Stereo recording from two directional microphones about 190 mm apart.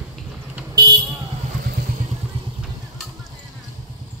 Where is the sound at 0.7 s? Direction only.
20° right (ahead or behind).